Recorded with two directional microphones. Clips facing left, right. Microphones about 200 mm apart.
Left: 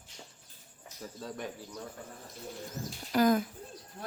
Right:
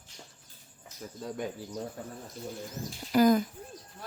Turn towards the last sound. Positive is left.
turn(degrees=0)  # may be behind; listen again after turning